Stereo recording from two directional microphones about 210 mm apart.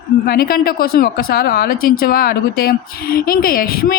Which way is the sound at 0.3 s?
45° left (ahead or behind).